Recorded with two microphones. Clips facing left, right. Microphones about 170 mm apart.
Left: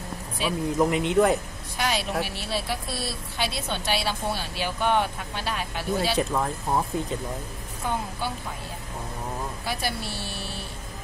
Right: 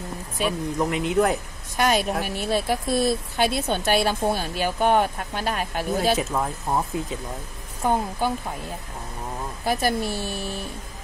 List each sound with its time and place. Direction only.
0.4 s a woman's voice: 50° right (ahead or behind)
0.7 s speech: centre (ahead or behind)
1.8 s a woman's voice: 50° right (ahead or behind)
6.1 s speech: 5° right (ahead or behind)
7.8 s a woman's voice: 50° right (ahead or behind)
9.7 s a woman's voice: 45° right (ahead or behind)